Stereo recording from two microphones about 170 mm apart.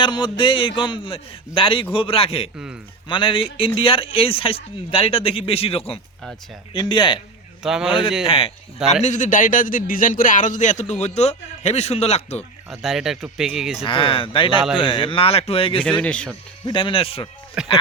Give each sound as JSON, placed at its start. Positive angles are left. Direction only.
{"t": 0.0, "sound": "a man's voice", "side_deg": 25}
{"t": 7.6, "sound": "speech", "side_deg": -5}
{"t": 8.3, "sound": "a man's voice", "side_deg": 35}
{"t": 8.9, "sound": "a man's voice", "side_deg": 45}
{"t": 12.7, "sound": "speech", "side_deg": 0}
{"t": 13.8, "sound": "a man's voice", "side_deg": 30}
{"t": 16.0, "sound": "speech", "side_deg": 5}
{"t": 16.6, "sound": "a man's voice", "side_deg": 30}
{"t": 17.5, "sound": "speech", "side_deg": -5}